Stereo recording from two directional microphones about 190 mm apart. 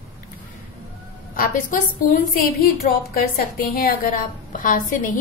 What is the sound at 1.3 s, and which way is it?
A woman's voice, 45° left (ahead or behind).